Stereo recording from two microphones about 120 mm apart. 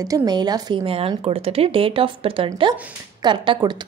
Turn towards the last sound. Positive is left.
turn(degrees=-40)  # may be behind; listen again after turning